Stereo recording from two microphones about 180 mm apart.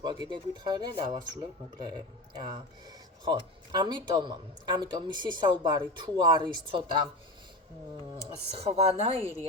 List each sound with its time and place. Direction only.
0.0 s speech: 25° right (ahead or behind)
8.5 s speech: 35° right (ahead or behind)